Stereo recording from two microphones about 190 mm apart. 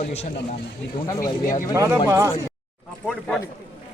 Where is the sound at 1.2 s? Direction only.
45° left (ahead or behind).